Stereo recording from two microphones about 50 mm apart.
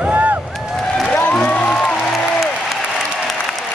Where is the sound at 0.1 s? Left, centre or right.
Right.